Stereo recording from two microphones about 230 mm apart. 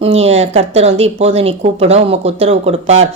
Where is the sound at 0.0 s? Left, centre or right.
Right.